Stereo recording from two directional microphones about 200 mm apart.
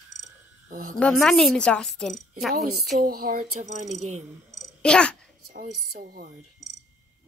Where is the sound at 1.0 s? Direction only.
Centre (ahead or behind).